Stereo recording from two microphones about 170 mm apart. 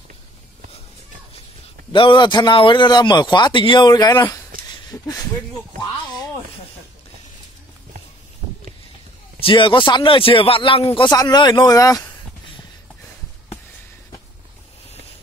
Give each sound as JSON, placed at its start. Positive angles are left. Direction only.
{"t": 1.9, "sound": "a man's voice", "side_deg": 30}
{"t": 9.4, "sound": "a man's voice", "side_deg": 30}